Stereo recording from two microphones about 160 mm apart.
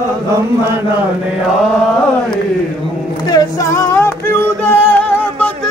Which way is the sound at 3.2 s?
20° left (ahead or behind).